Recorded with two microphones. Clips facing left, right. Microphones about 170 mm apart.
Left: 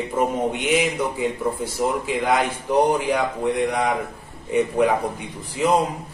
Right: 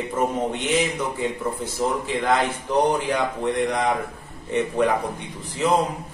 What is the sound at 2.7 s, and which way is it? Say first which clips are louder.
A man's voice: left 2 dB; 10° left (ahead or behind).